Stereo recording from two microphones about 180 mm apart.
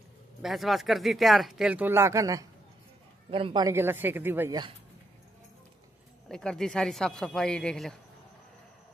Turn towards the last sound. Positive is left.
turn(degrees=5)  # may be behind; listen again after turning